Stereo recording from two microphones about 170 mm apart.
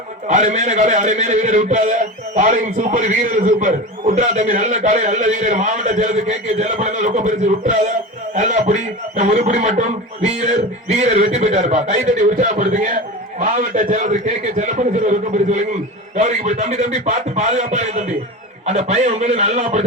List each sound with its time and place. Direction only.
0.3 s a man's voice: 45° right (ahead or behind)